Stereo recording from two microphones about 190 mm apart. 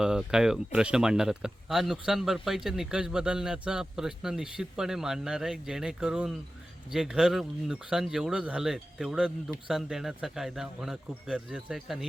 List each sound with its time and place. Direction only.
0.0 s speech: 5° right (ahead or behind)